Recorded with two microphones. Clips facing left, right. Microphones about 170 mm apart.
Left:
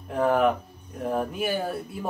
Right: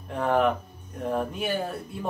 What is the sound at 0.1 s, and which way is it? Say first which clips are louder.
Speech: left 2 dB; centre (ahead or behind).